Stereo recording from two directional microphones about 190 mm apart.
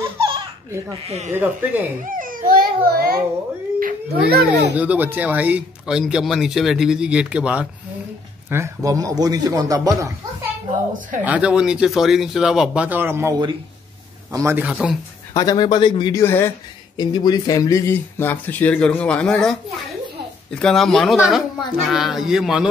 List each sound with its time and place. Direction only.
1.0 s speech: 35° right (ahead or behind)
1.3 s a man's voice: 10° right (ahead or behind)
2.0 s a child's voice: 45° right (ahead or behind)
4.7 s speech: 10° right (ahead or behind)
11.2 s speech: 5° right (ahead or behind)
14.3 s a man's voice: 15° right (ahead or behind)
15.3 s speech: 20° left (ahead or behind)
16.9 s speech: 25° left (ahead or behind); by 22.7 s centre (ahead or behind)